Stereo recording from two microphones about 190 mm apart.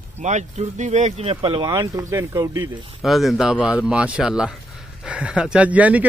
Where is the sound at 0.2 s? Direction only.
40° right (ahead or behind); by 2.7 s 20° right (ahead or behind).